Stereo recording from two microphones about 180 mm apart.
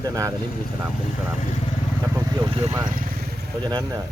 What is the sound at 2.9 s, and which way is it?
Vehicle, 50° right (ahead or behind).